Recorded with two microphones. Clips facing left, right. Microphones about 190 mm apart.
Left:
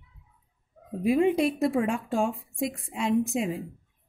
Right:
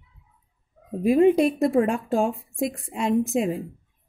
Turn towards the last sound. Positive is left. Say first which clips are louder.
# right 3 dB
turn(degrees=-50)  # may be behind; listen again after turning